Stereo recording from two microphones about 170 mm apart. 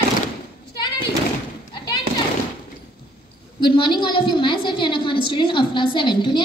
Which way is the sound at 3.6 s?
30° left (ahead or behind).